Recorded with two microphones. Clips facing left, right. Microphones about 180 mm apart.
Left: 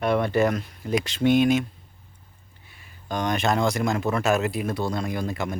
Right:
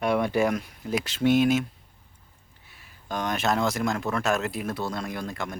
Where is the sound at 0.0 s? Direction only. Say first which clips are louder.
Left 2 dB; 10° right (ahead or behind).